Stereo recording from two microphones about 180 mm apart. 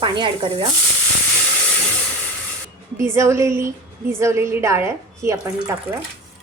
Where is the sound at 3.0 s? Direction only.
15° right (ahead or behind).